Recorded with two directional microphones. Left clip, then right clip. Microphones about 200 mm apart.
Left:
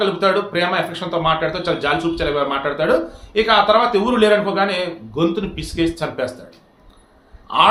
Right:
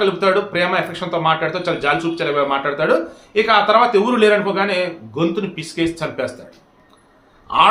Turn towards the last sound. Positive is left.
turn(degrees=-5)  # may be behind; listen again after turning